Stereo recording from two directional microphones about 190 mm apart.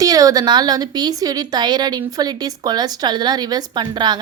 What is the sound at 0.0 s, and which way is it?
A woman's voice, 20° right (ahead or behind).